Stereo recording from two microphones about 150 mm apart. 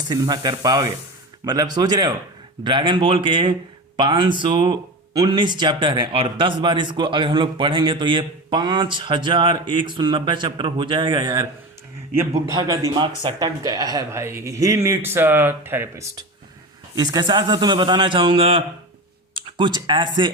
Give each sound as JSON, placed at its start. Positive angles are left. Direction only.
{"t": 0.0, "sound": "speech", "side_deg": -25}
{"t": 12.1, "sound": "speech", "side_deg": -20}
{"t": 16.9, "sound": "speech", "side_deg": -25}